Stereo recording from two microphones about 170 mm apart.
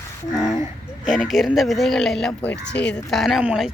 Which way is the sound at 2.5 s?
90° left.